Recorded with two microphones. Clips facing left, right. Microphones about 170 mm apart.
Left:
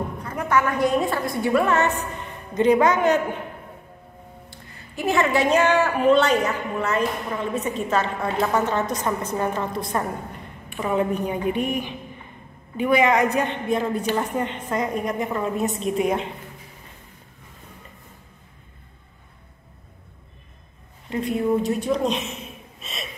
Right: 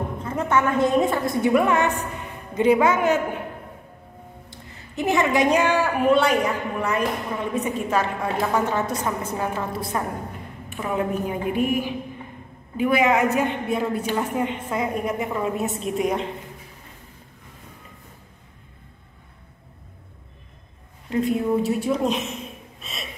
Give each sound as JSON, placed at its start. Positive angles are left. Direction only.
{"t": 0.2, "sound": "a woman's voice", "side_deg": -25}
{"t": 4.5, "sound": "a woman's voice", "side_deg": -20}
{"t": 21.1, "sound": "a woman's voice", "side_deg": 0}
{"t": 22.8, "sound": "a sound", "side_deg": 0}